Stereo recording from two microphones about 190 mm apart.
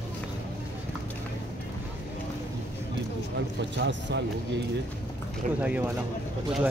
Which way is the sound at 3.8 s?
65° right (ahead or behind).